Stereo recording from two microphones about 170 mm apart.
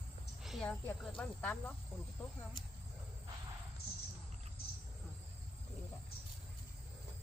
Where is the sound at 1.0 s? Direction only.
5° left (ahead or behind).